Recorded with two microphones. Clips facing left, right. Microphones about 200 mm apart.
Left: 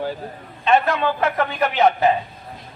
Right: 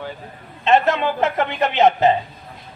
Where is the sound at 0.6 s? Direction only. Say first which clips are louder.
Right 1 dB; 25° right (ahead or behind).